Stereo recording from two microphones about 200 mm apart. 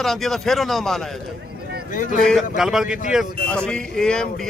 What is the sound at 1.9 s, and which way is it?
Speech, 40° left (ahead or behind).